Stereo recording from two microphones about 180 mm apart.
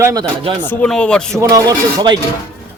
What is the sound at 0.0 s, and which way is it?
Speech, 20° right (ahead or behind).